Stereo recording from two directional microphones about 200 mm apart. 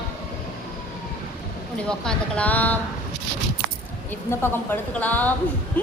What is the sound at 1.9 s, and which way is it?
Speech, 5° left (ahead or behind).